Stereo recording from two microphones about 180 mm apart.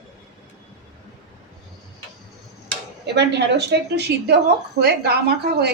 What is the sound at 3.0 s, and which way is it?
A woman's voice, 70° right (ahead or behind).